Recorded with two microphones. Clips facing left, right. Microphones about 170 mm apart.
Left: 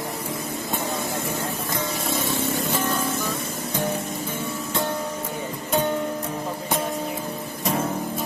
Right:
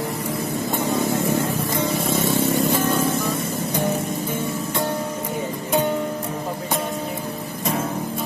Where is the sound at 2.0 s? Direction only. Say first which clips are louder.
Right 5 dB; 50° right (ahead or behind).